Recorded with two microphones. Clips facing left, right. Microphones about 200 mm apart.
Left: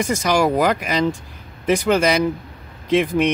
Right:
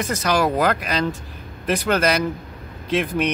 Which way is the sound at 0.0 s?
10° left (ahead or behind).